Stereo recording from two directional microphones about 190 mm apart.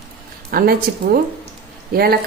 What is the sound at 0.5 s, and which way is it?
Speech, 50° right (ahead or behind).